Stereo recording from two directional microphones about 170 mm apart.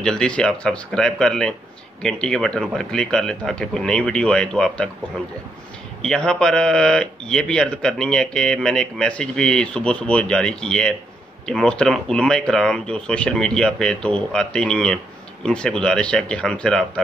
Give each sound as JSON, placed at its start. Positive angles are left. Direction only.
{"t": 0.0, "sound": "a man's voice", "side_deg": 5}
{"t": 6.0, "sound": "a man's voice", "side_deg": 5}